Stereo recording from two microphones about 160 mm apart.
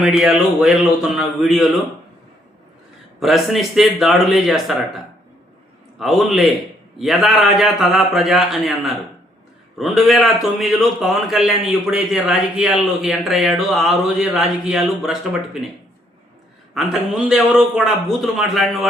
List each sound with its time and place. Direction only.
0.0 s a man's voice: 5° right (ahead or behind)
3.2 s a man's voice: centre (ahead or behind)
6.0 s a man's voice: centre (ahead or behind)
16.7 s a man's voice: centre (ahead or behind)